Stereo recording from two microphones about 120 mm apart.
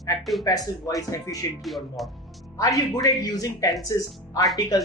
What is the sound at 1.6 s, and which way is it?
Speech, centre (ahead or behind).